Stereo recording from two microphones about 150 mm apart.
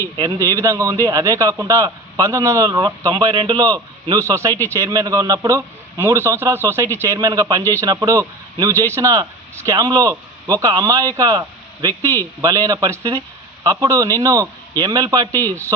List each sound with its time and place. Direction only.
0.2 s a man's voice: 25° right (ahead or behind)